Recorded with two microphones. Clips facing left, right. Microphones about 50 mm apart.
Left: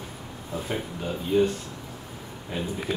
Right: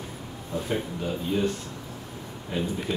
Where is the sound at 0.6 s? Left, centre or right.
Centre.